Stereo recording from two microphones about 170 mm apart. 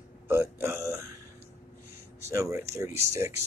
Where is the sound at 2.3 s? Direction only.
15° right (ahead or behind).